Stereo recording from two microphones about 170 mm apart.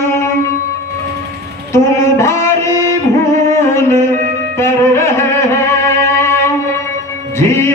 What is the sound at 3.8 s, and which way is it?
Music, 15° left (ahead or behind).